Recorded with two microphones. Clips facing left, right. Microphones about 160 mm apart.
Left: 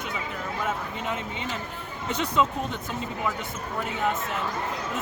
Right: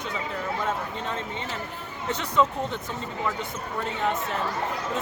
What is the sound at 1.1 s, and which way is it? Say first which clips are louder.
Speech: left 1 dB; 15° left (ahead or behind).